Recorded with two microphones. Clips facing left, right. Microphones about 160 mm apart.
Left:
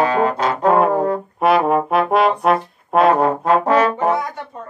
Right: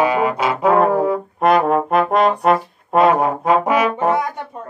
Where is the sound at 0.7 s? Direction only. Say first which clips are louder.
Right 1 dB; centre (ahead or behind).